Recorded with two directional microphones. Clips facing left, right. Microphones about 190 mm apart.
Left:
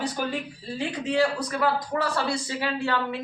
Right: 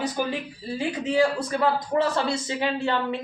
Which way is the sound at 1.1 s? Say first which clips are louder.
Right 2 dB; 25° right (ahead or behind).